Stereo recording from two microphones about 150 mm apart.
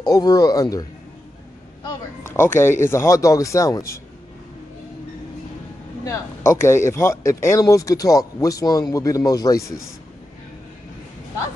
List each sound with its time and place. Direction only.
0.0 s speech: 25° left (ahead or behind)
2.2 s speech: 15° left (ahead or behind)
6.0 s speech: 15° left (ahead or behind)